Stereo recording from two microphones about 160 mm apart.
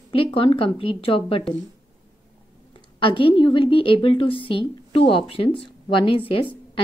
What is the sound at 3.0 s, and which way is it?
A woman's voice, 30° left (ahead or behind).